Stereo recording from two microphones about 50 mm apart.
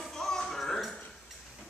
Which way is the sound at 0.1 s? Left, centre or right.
Centre.